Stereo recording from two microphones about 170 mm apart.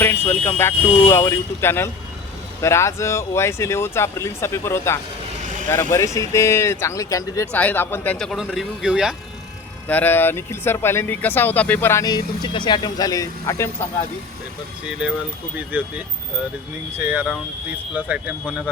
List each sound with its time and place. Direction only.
0.0 s speech: 15° left (ahead or behind); by 9.1 s 5° right (ahead or behind)
9.9 s speech: 10° left (ahead or behind)
14.8 s speech: 5° right (ahead or behind)
17.0 s speech: 10° right (ahead or behind)